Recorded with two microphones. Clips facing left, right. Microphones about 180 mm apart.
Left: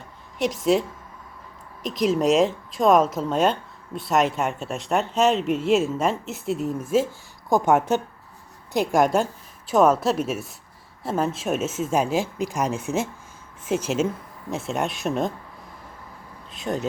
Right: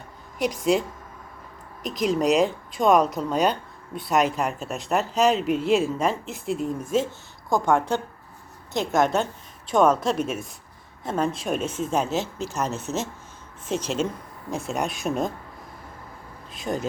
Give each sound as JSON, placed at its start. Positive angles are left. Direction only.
{"t": 0.3, "sound": "speech", "side_deg": 0}
{"t": 7.5, "sound": "a woman's voice", "side_deg": 20}
{"t": 16.6, "sound": "speech", "side_deg": 0}